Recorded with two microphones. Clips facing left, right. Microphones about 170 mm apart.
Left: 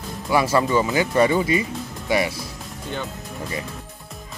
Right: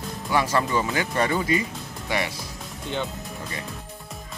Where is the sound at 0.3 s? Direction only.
10° left (ahead or behind).